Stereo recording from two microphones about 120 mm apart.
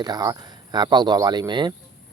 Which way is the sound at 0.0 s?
35° right (ahead or behind).